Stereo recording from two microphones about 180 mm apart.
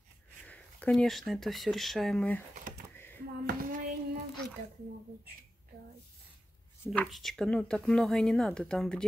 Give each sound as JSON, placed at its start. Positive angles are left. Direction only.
{"t": 0.5, "sound": "speech", "side_deg": 5}
{"t": 3.4, "sound": "a sound", "side_deg": -55}
{"t": 6.8, "sound": "speech", "side_deg": 5}